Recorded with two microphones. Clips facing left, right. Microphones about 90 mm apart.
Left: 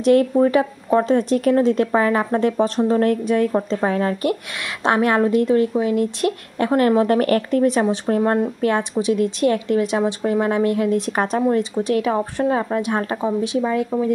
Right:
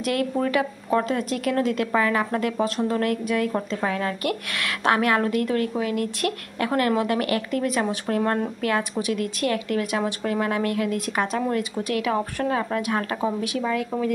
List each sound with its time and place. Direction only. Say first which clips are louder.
0.0 s speech: left 9 dB; 30° left (ahead or behind)
8.2 s speech: left 4 dB; 15° left (ahead or behind)
8.5 s speech: left 5 dB; 30° left (ahead or behind)